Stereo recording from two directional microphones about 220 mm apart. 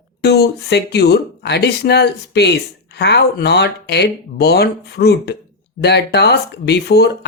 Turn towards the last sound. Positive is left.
turn(degrees=50)  # may be behind; listen again after turning